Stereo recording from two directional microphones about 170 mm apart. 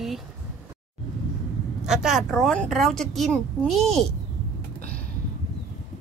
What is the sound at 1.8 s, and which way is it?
A woman's voice, 5° right (ahead or behind).